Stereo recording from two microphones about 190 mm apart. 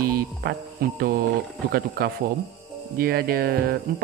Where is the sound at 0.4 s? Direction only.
55° right (ahead or behind).